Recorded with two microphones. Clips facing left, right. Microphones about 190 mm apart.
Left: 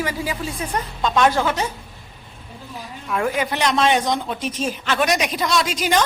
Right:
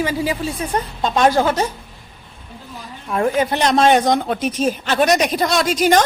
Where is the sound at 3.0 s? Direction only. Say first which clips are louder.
Right 4 dB; 30° right (ahead or behind).